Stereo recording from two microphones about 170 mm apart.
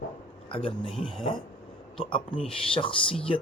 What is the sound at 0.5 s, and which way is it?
Speech, 35° left (ahead or behind).